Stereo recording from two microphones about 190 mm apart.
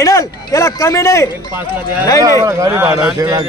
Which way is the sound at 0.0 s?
20° left (ahead or behind).